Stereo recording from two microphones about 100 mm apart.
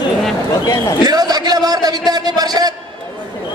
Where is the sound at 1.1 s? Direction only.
40° right (ahead or behind).